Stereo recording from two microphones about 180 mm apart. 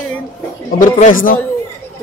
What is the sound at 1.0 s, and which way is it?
Speech, 50° left (ahead or behind).